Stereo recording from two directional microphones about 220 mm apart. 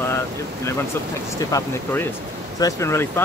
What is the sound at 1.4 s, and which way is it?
Speech, 15° left (ahead or behind).